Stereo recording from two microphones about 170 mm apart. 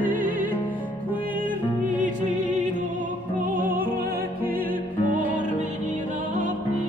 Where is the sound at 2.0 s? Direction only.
50° right (ahead or behind).